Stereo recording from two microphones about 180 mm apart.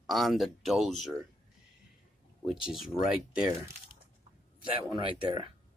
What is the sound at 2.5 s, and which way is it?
Speech, centre (ahead or behind).